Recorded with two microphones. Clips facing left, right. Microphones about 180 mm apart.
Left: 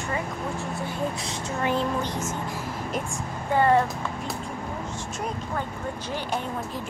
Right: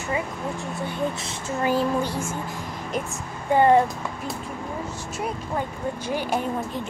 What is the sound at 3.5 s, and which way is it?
Speech, 20° right (ahead or behind).